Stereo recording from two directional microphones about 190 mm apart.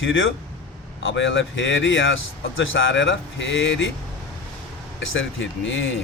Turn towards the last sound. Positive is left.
turn(degrees=85)